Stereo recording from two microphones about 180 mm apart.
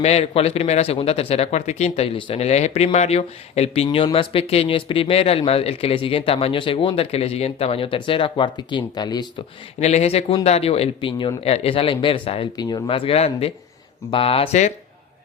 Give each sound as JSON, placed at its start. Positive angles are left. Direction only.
{"t": 0.0, "sound": "speech", "side_deg": 35}
{"t": 9.8, "sound": "speech", "side_deg": 35}